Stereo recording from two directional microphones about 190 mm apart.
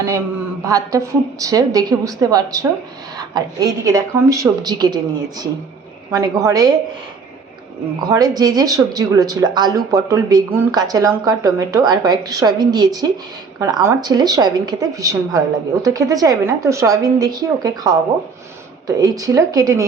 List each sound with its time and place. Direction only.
0.6 s a woman's voice: 15° right (ahead or behind)
6.1 s a woman's voice: 15° right (ahead or behind)
8.0 s speech: 20° right (ahead or behind)